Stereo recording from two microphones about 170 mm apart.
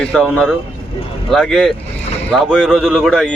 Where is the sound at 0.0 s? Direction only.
5° left (ahead or behind).